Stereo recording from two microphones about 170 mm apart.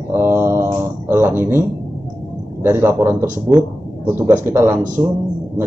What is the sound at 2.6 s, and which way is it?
A man's voice, 10° right (ahead or behind).